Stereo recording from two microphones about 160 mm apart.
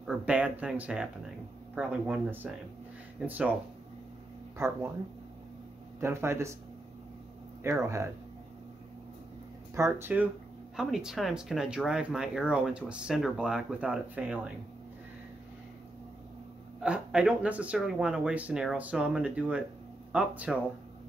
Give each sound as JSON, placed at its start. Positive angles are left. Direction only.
{"t": 0.0, "sound": "speech", "side_deg": -5}
{"t": 4.6, "sound": "speech", "side_deg": -15}
{"t": 5.9, "sound": "speech", "side_deg": -15}
{"t": 7.6, "sound": "speech", "side_deg": -20}
{"t": 9.8, "sound": "speech", "side_deg": -15}
{"t": 16.8, "sound": "speech", "side_deg": -5}